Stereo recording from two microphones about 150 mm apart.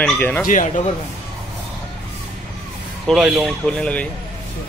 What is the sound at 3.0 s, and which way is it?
Speech, centre (ahead or behind).